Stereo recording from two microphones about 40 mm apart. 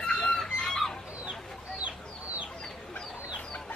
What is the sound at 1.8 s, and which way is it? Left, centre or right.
Chicken, right.